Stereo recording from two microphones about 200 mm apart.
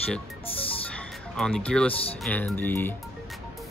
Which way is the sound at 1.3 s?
5° left (ahead or behind).